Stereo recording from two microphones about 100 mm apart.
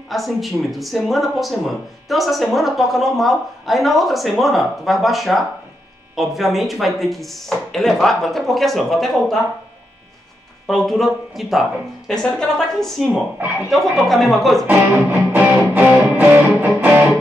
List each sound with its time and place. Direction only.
0.1 s speech: centre (ahead or behind)
10.7 s speech: centre (ahead or behind)
14.7 s music: 15° right (ahead or behind)